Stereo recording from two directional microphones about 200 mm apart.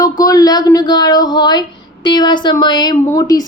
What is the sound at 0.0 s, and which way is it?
A woman's voice, 20° left (ahead or behind).